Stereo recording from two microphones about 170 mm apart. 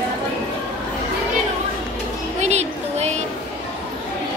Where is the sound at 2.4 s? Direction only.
40° right (ahead or behind).